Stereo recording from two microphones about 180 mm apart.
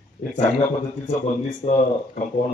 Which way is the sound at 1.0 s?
40° left (ahead or behind).